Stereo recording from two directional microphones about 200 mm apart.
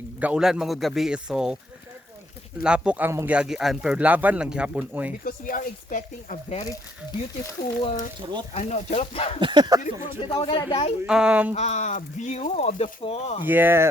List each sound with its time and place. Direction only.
0.2 s speech: 5° right (ahead or behind)
2.6 s speech: 5° right (ahead or behind)
5.2 s speech: 40° left (ahead or behind)
7.8 s speech: 35° left (ahead or behind)
9.4 s speech: 25° right (ahead or behind)
10.2 s speech: 30° left (ahead or behind)
11.0 s speech: 5° right (ahead or behind)
11.5 s speech: 35° left (ahead or behind)
13.4 s speech: 10° right (ahead or behind)